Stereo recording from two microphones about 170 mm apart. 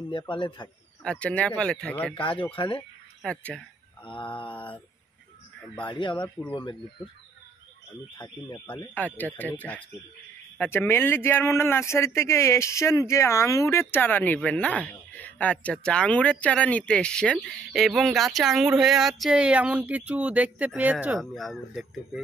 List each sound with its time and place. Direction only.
0.3 s speech: 30° left (ahead or behind)
1.0 s speech: 5° left (ahead or behind)
2.5 s speech: 30° left (ahead or behind)
3.2 s a sound: 5° left (ahead or behind)
5.9 s speech: 30° left (ahead or behind)
6.1 s speech: 10° left (ahead or behind)
6.5 s speech: 30° left (ahead or behind)
8.2 s speech: 25° left (ahead or behind)
8.9 s speech: 10° left (ahead or behind)